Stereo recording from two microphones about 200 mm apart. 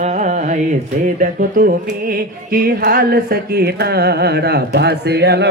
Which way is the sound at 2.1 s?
45° right (ahead or behind).